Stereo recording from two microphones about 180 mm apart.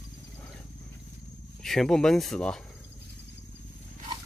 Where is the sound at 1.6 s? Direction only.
5° left (ahead or behind).